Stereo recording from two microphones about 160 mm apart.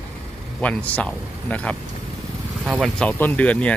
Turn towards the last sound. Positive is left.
turn(degrees=10)  # may be behind; listen again after turning